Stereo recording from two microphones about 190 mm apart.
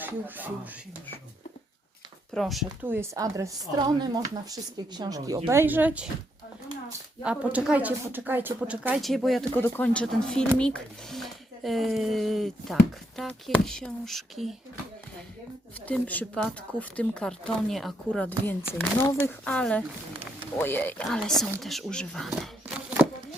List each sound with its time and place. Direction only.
0.0 s speech: 10° right (ahead or behind)
2.3 s speech: centre (ahead or behind)
2.8 s speech: 10° right (ahead or behind)
7.2 s speech: 5° right (ahead or behind)
15.9 s speech: 10° left (ahead or behind)